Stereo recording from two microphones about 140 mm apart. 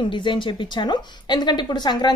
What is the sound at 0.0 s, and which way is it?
Speech, 35° left (ahead or behind).